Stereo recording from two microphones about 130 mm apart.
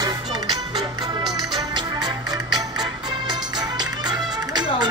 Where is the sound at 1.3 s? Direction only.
35° right (ahead or behind).